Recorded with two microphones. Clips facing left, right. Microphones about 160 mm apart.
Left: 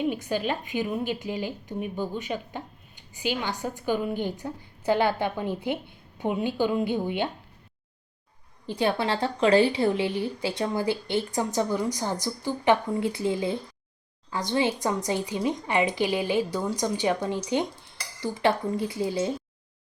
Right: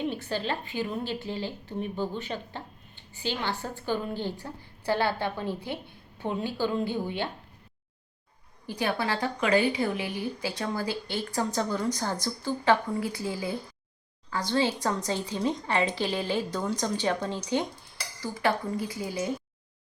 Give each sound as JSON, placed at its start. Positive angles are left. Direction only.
{"t": 0.1, "sound": "a woman's voice", "side_deg": 15}
{"t": 8.6, "sound": "a woman's voice", "side_deg": 25}